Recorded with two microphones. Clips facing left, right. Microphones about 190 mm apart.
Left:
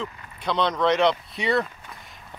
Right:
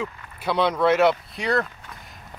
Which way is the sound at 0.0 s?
10° right (ahead or behind).